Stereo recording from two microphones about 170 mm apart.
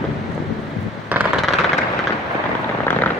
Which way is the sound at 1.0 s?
10° right (ahead or behind).